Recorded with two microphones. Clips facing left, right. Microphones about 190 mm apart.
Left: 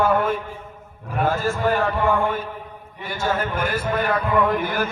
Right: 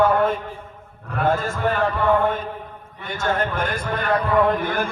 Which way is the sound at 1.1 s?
5° left (ahead or behind).